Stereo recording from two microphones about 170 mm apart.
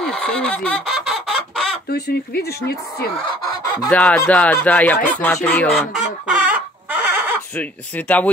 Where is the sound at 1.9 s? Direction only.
70° left (ahead or behind).